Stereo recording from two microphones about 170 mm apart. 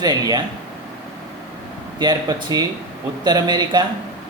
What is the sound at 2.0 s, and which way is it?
Speech, 25° right (ahead or behind).